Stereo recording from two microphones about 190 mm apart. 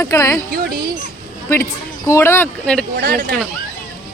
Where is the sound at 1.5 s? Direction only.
15° left (ahead or behind).